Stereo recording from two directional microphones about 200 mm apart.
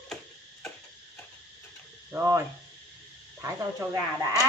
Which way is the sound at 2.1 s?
15° right (ahead or behind).